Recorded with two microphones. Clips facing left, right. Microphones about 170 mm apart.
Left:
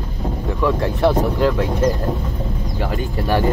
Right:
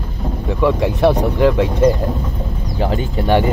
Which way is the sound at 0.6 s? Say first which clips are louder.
Right 3 dB; 20° right (ahead or behind).